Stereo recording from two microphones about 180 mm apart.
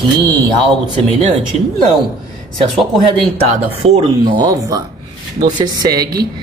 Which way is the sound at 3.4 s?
35° right (ahead or behind).